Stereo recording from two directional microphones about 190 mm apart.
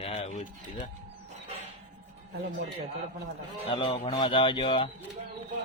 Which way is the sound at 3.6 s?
25° left (ahead or behind).